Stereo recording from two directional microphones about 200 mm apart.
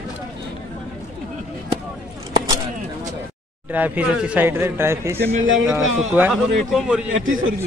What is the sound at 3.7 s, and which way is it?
Speech, 10° right (ahead or behind).